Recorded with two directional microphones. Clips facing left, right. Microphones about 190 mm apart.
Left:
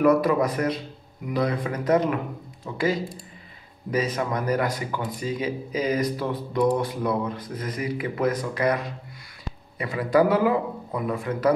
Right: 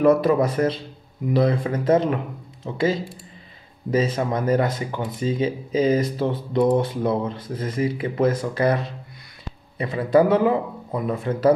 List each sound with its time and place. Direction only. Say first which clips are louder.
0.0 s speech: right 2 dB; 25° right (ahead or behind)